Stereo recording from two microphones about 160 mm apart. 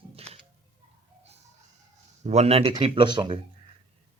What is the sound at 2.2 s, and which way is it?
Speech, 45° right (ahead or behind).